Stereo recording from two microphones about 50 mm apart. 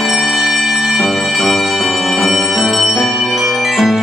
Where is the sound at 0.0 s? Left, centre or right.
Centre.